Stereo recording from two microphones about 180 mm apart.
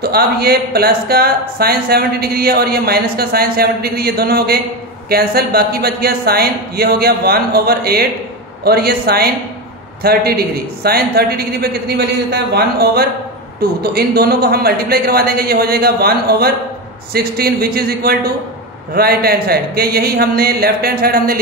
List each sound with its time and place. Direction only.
0.0 s speech: 60° right (ahead or behind)